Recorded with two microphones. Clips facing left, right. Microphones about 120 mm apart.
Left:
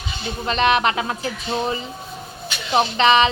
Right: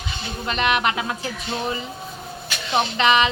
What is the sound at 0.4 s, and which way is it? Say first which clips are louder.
Speech: left 3 dB; 30° left (ahead or behind).